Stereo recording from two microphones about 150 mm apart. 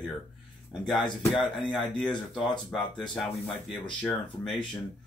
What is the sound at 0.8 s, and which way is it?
Speech, centre (ahead or behind).